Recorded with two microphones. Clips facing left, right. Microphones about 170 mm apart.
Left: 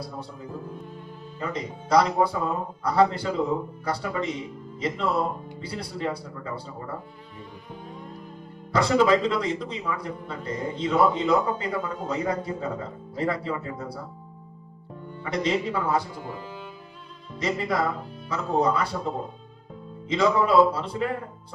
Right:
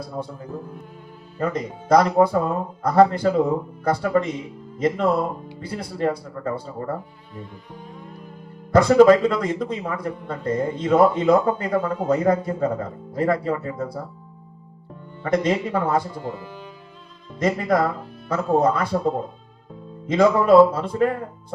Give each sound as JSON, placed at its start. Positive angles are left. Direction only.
{"t": 1.4, "sound": "speech", "side_deg": -50}
{"t": 8.7, "sound": "speech", "side_deg": -50}
{"t": 15.2, "sound": "speech", "side_deg": -50}
{"t": 17.4, "sound": "speech", "side_deg": -50}